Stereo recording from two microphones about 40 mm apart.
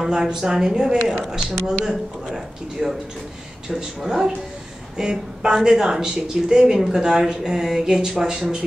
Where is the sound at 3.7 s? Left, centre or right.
Centre.